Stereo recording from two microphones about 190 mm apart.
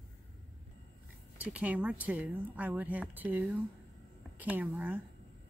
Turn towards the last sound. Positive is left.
turn(degrees=-5)  # may be behind; listen again after turning